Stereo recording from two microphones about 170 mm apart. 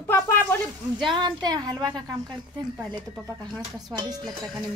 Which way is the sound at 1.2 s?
25° right (ahead or behind).